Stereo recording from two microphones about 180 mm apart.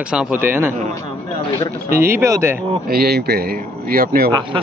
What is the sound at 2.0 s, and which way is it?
Speech, 15° right (ahead or behind).